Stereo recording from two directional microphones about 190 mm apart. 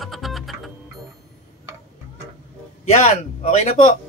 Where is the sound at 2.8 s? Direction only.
35° left (ahead or behind).